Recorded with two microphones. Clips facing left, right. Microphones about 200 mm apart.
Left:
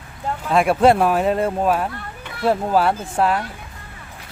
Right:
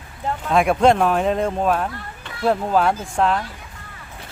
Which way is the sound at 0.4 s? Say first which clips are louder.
Left 1 dB; centre (ahead or behind).